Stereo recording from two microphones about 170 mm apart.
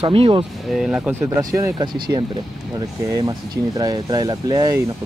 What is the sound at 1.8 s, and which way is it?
Speech, 25° right (ahead or behind).